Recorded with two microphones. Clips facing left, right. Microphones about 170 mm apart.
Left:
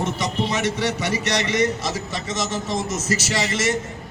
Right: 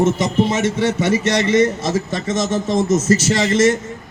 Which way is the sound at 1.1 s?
50° right (ahead or behind).